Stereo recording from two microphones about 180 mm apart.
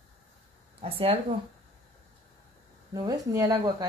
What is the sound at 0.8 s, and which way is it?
Speech, 30° right (ahead or behind).